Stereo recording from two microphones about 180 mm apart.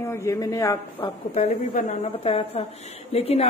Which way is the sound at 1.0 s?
35° left (ahead or behind).